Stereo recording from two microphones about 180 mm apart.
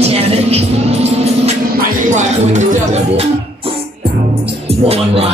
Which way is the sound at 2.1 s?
40° right (ahead or behind).